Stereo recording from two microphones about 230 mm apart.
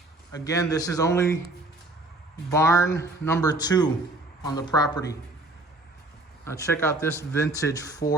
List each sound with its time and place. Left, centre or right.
0.4 s speech: centre
2.5 s speech: centre
6.4 s speech: centre